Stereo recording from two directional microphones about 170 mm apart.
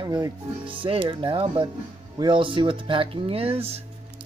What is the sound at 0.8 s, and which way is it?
Speech, 30° right (ahead or behind).